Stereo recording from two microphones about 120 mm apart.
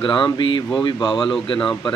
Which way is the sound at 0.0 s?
40° left (ahead or behind).